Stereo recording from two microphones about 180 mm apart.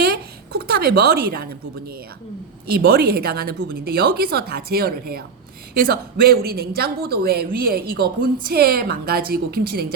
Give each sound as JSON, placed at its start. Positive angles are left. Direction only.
{"t": 0.0, "sound": "a woman's voice", "side_deg": -60}